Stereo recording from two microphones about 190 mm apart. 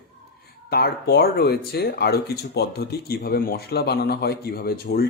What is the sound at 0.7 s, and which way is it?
Speech, 60° left (ahead or behind).